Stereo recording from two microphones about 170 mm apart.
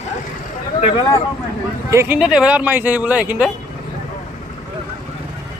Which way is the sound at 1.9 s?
10° right (ahead or behind).